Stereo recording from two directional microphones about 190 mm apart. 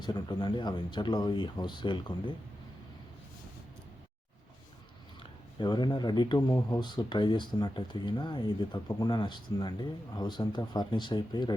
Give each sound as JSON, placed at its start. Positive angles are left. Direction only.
{"t": 0.0, "sound": "speech", "side_deg": 20}
{"t": 5.5, "sound": "speech", "side_deg": 20}